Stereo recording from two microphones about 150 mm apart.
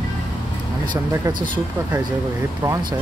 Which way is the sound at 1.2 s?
30° right (ahead or behind).